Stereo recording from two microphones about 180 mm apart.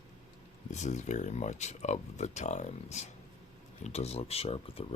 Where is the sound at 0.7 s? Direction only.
40° left (ahead or behind).